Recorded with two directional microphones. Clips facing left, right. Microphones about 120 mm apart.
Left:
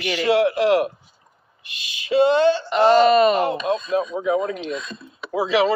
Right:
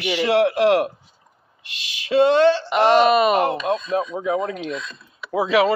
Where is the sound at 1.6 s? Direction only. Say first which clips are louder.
Right 1 dB; 85° right.